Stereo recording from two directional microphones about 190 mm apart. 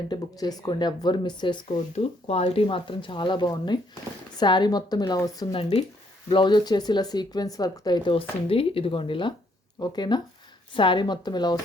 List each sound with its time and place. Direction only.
0.1 s speech: 20° left (ahead or behind)